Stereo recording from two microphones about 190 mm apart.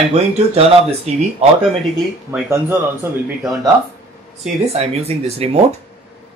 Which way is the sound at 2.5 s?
15° right (ahead or behind).